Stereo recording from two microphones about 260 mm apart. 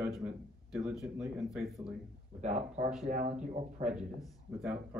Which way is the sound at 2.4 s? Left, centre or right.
Right.